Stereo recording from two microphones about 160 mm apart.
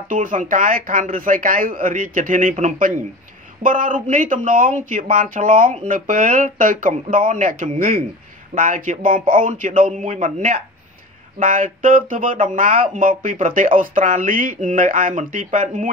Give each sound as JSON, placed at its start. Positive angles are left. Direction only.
{"t": 0.1, "sound": "a man's voice", "side_deg": -55}